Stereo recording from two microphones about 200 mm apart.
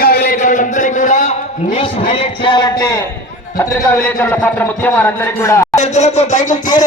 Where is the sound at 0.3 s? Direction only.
40° left (ahead or behind); by 3.1 s 15° left (ahead or behind).